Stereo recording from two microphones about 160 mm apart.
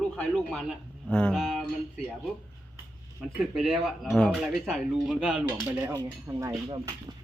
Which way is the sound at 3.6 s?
Centre (ahead or behind).